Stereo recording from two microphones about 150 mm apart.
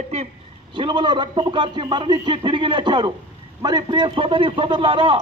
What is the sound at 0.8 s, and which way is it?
A man's voice, 30° right (ahead or behind).